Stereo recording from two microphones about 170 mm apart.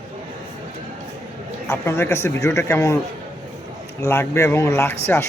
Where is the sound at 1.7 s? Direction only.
15° left (ahead or behind).